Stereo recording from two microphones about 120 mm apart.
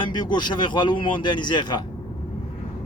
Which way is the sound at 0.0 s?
40° left (ahead or behind).